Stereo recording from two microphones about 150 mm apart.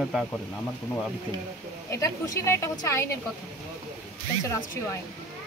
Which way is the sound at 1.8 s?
20° left (ahead or behind).